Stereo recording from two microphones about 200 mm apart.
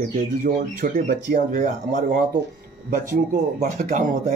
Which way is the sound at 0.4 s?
45° right (ahead or behind).